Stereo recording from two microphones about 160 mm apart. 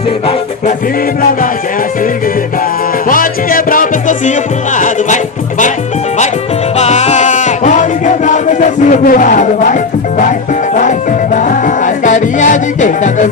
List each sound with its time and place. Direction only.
3.1 s music: 60° left (ahead or behind)
4.8 s speech: 50° left (ahead or behind)
6.7 s music: 45° left (ahead or behind)
11.3 s music: 55° left (ahead or behind)